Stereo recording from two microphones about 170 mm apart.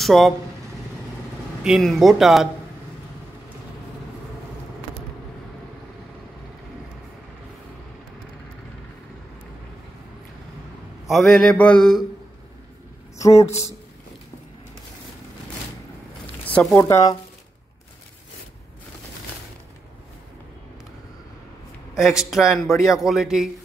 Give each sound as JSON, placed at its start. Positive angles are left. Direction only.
{"t": 0.0, "sound": "speech", "side_deg": 0}
{"t": 1.6, "sound": "a man's voice", "side_deg": 0}
{"t": 11.1, "sound": "a man's voice", "side_deg": 0}
{"t": 16.4, "sound": "speech", "side_deg": 10}
{"t": 21.9, "sound": "a man's voice", "side_deg": -5}